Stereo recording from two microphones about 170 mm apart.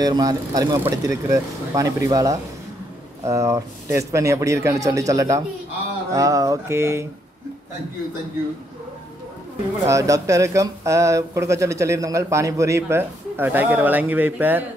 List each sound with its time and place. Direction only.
0.0 s speech: 20° right (ahead or behind)
9.8 s speech: 20° right (ahead or behind)